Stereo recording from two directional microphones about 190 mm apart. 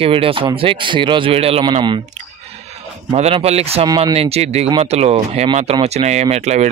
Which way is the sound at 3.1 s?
35° right (ahead or behind).